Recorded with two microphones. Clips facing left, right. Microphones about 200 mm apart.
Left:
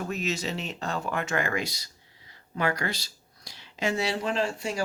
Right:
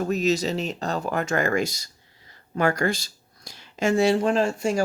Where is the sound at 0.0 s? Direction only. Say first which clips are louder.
Right 8 dB; 40° right (ahead or behind).